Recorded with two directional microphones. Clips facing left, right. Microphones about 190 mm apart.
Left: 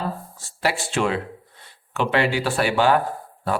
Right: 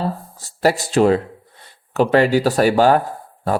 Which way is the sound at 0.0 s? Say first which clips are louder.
Right 5 dB; 40° right (ahead or behind).